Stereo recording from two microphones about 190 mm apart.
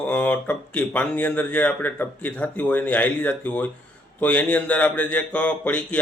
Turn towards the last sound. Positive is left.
turn(degrees=10)  # may be behind; listen again after turning